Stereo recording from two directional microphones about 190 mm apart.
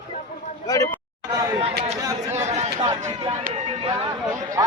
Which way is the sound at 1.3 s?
20° right (ahead or behind).